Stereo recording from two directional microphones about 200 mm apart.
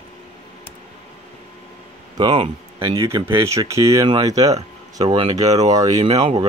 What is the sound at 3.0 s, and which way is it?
Speech, 15° right (ahead or behind).